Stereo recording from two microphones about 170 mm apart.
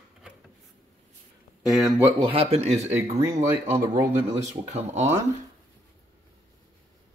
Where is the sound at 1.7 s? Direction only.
Centre (ahead or behind).